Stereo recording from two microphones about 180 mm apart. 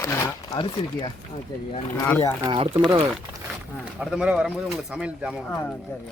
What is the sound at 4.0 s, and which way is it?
Speech, 5° right (ahead or behind).